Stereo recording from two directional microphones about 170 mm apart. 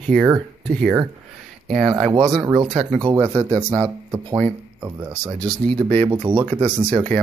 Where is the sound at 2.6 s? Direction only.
35° right (ahead or behind).